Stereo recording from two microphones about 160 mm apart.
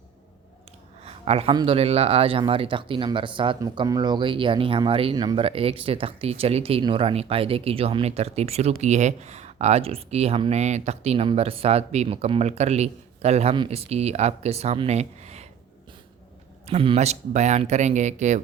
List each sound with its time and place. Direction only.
1.0 s a sound: 40° right (ahead or behind)
1.5 s speech: 35° right (ahead or behind)
16.6 s speech: 40° right (ahead or behind)